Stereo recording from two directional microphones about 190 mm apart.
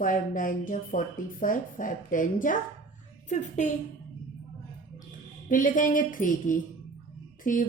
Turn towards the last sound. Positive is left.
turn(degrees=45)  # may be behind; listen again after turning